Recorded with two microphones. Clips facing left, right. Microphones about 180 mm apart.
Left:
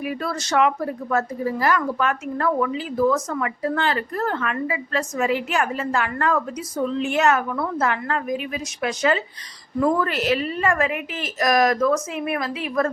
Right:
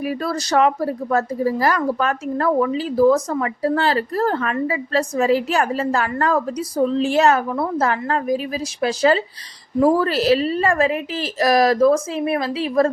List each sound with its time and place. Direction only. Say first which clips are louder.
0.0 s a woman's voice: right 4 dB; 35° right (ahead or behind)